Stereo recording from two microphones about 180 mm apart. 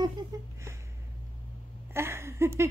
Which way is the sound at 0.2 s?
25° right (ahead or behind).